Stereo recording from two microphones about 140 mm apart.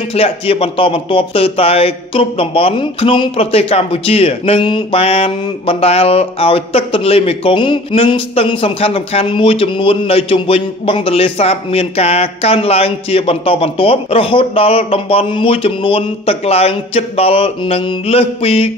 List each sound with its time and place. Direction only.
0.1 s speech: 45° left (ahead or behind)